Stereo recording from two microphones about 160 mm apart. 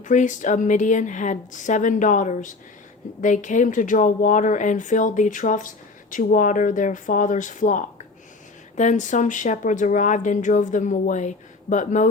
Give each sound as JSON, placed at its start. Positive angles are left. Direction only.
{"t": 0.0, "sound": "a woman's voice", "side_deg": 50}